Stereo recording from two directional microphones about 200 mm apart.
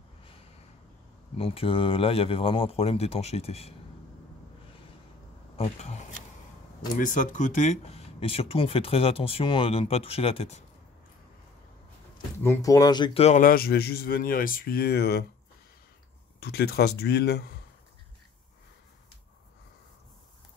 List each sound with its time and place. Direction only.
1.4 s speech: 30° left (ahead or behind)
5.6 s speech: 35° left (ahead or behind)
12.4 s speech: 15° left (ahead or behind)
13.4 s speech: 45° left (ahead or behind)
16.3 s speech: 50° left (ahead or behind)